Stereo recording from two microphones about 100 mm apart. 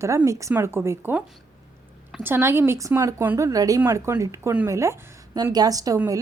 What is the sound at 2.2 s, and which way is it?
Speech, 25° right (ahead or behind).